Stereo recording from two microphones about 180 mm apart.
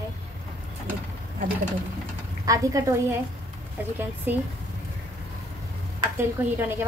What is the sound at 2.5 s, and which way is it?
Speech, 20° right (ahead or behind).